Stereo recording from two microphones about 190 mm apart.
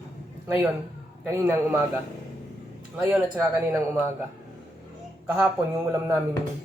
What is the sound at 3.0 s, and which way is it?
Speech, 10° right (ahead or behind).